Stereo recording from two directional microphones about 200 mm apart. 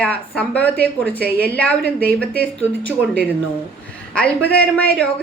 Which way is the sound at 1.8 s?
50° right (ahead or behind).